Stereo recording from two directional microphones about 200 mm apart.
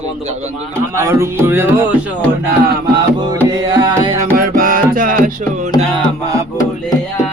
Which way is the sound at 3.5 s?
20° right (ahead or behind).